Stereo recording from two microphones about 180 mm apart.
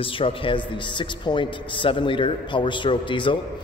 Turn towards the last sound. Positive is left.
turn(degrees=25)  # may be behind; listen again after turning